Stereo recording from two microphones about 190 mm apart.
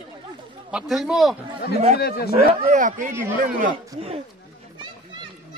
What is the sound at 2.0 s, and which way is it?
Speech, 55° left (ahead or behind).